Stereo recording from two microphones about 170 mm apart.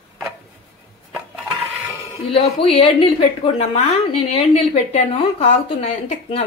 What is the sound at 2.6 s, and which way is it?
A woman's voice, 35° left (ahead or behind).